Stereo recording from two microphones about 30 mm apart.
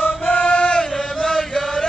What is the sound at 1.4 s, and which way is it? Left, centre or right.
Chant, centre.